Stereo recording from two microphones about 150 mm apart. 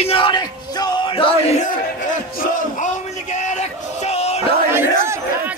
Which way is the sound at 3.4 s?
50° left (ahead or behind).